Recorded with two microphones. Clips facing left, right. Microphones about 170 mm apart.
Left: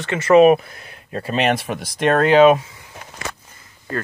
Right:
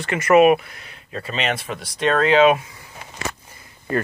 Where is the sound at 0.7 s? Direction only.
50° left (ahead or behind).